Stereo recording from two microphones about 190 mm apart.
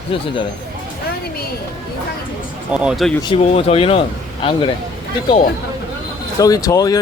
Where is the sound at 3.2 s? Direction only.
30° left (ahead or behind).